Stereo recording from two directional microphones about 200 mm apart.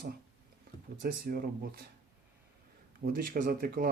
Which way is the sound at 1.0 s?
50° right (ahead or behind).